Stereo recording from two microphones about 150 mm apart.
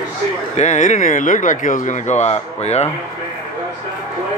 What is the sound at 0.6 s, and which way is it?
Speech, 55° left (ahead or behind).